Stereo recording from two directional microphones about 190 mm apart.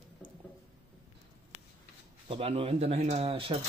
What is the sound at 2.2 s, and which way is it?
A man's voice, 30° right (ahead or behind).